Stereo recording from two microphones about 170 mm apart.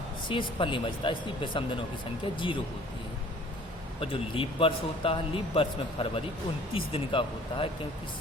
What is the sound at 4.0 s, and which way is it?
Speech, 30° left (ahead or behind).